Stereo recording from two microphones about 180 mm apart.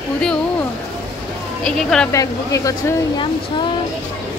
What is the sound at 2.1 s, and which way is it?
Speech, 15° left (ahead or behind).